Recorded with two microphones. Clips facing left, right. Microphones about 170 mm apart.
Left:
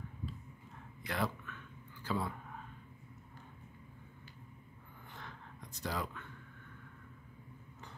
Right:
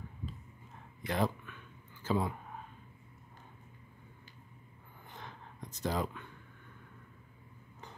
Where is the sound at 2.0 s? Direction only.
20° right (ahead or behind).